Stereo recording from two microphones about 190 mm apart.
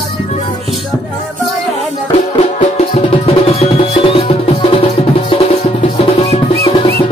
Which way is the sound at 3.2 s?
30° left (ahead or behind).